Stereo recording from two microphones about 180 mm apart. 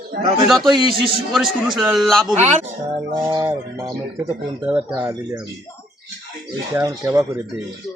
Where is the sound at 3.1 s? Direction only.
20° right (ahead or behind).